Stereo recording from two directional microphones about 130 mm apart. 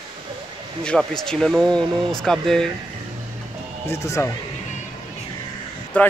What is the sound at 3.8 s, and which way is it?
Speech, 20° left (ahead or behind).